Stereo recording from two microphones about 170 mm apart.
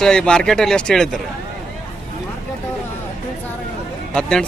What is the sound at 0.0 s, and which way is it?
Speech, 5° left (ahead or behind).